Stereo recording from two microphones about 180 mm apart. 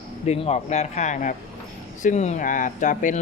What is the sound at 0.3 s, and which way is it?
Speech, 35° left (ahead or behind).